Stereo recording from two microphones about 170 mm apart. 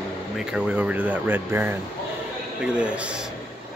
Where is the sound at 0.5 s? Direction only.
5° right (ahead or behind).